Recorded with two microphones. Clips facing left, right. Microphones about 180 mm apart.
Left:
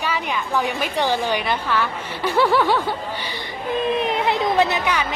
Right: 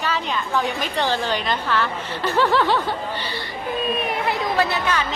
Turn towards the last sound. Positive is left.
turn(degrees=15)  # may be behind; listen again after turning